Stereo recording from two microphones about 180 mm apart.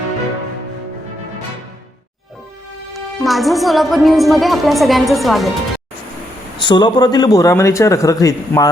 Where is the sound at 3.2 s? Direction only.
Centre (ahead or behind).